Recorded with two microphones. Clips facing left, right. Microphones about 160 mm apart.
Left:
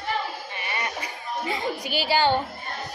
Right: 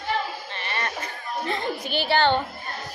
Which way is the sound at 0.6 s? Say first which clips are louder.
Right 1 dB; 10° left (ahead or behind).